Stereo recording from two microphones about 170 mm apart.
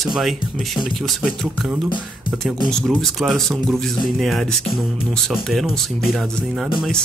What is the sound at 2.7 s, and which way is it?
Speech, centre (ahead or behind).